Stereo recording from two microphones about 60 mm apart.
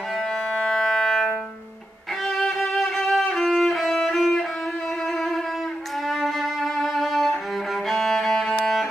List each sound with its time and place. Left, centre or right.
0.6 s civil defense siren: centre
2.2 s music: centre
6.0 s music: centre